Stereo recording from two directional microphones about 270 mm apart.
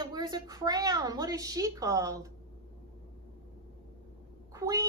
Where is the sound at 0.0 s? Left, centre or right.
Centre.